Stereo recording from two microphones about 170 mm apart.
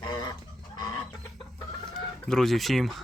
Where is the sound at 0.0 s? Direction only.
25° left (ahead or behind).